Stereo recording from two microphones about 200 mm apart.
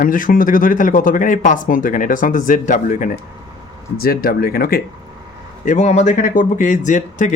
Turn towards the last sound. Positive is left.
turn(degrees=40)  # may be behind; listen again after turning